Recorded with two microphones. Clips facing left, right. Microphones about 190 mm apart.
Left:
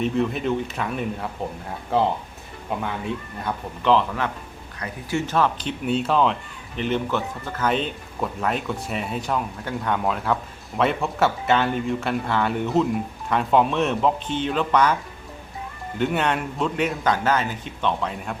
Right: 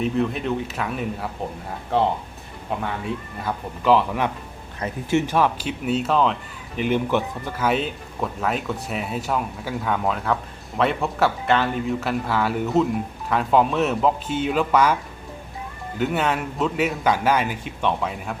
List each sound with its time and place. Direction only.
0.0 s speech: centre (ahead or behind)
6.7 s speech: 10° right (ahead or behind)
16.0 s speech: centre (ahead or behind)